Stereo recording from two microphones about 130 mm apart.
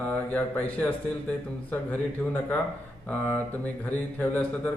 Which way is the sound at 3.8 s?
10° left (ahead or behind).